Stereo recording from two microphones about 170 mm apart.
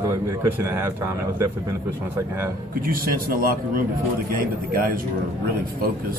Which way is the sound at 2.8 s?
55° right (ahead or behind).